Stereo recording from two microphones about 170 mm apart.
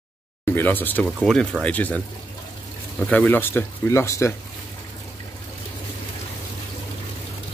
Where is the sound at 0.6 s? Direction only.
10° left (ahead or behind).